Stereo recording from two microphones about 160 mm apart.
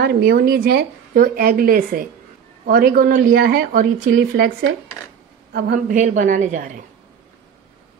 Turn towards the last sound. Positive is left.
turn(degrees=-55)  # may be behind; listen again after turning